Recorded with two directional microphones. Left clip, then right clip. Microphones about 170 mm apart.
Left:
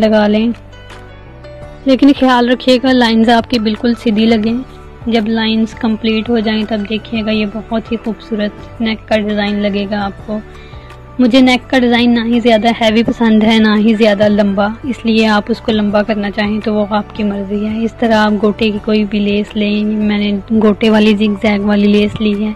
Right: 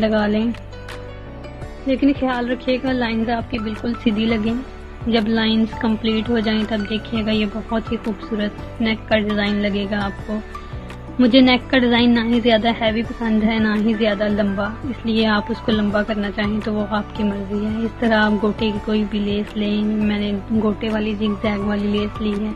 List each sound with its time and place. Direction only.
0.0 s speech: 35° left (ahead or behind)
1.9 s a woman's voice: 55° left (ahead or behind); by 4.6 s 40° left (ahead or behind)
5.1 s speech: 30° left (ahead or behind)
11.1 s speech: 30° left (ahead or behind)
18.0 s a woman's voice: 35° left (ahead or behind); by 21.3 s 55° left (ahead or behind)
21.4 s a woman's voice: 45° left (ahead or behind)